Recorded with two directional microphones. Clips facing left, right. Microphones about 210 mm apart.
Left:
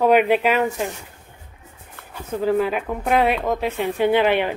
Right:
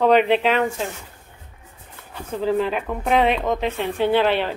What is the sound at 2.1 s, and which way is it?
Speech, 10° left (ahead or behind).